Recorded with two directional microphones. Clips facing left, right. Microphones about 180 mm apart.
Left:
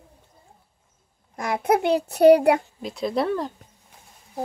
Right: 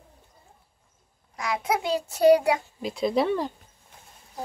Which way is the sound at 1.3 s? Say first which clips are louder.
Left 5 dB; 55° left (ahead or behind).